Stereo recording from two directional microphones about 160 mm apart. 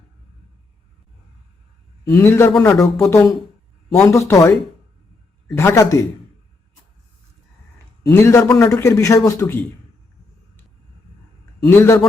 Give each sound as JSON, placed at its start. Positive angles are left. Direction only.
{"t": 2.0, "sound": "speech", "side_deg": 20}
{"t": 5.5, "sound": "speech", "side_deg": 15}
{"t": 8.0, "sound": "speech", "side_deg": 20}
{"t": 11.6, "sound": "speech", "side_deg": 15}